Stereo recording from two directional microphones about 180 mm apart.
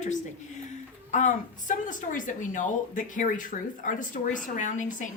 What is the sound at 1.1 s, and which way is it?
A woman's voice, 45° left (ahead or behind).